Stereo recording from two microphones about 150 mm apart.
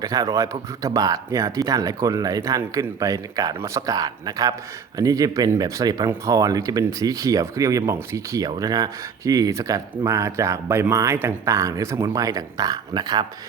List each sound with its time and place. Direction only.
0.0 s speech: 25° right (ahead or behind)